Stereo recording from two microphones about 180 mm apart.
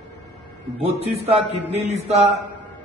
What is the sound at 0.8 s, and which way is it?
A man's voice, 35° right (ahead or behind).